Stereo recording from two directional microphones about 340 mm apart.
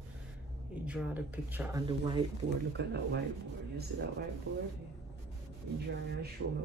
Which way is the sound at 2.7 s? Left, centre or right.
Right.